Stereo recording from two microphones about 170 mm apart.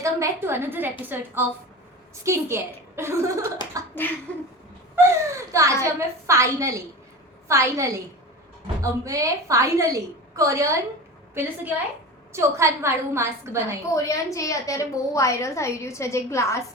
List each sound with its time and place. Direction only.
0.0 s speech: 15° right (ahead or behind)
4.9 s a woman's voice: 15° right (ahead or behind)
13.9 s a woman's voice: 20° left (ahead or behind)